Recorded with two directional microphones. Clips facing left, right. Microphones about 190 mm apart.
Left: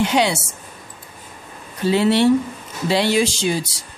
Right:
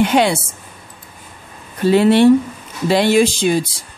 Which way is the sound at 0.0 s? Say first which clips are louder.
Right 4 dB; 55° right (ahead or behind).